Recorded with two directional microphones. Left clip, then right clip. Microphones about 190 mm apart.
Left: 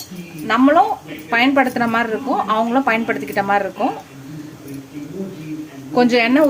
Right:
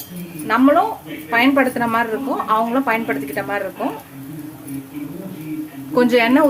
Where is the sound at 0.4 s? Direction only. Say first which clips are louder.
Left 1 dB; 15° left (ahead or behind).